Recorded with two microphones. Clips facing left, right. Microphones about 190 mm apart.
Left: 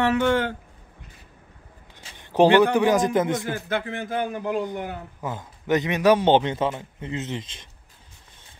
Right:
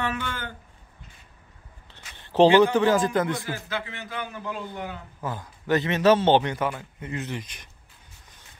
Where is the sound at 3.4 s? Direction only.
55° left (ahead or behind).